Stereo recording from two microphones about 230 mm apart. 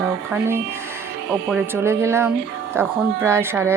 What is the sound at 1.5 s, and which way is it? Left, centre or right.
Speech, centre.